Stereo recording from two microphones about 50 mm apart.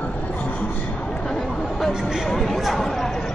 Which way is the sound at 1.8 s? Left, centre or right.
Centre.